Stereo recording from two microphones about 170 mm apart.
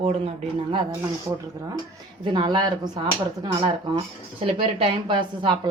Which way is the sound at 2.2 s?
30° right (ahead or behind).